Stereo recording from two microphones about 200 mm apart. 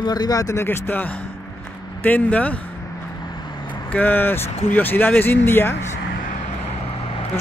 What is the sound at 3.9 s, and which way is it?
Speech, 10° left (ahead or behind).